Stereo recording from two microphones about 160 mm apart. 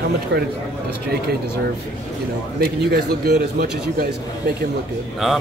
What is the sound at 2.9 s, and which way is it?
Speech, 75° right (ahead or behind).